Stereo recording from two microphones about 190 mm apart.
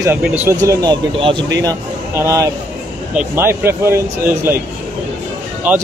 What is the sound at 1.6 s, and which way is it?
Speech, 15° right (ahead or behind).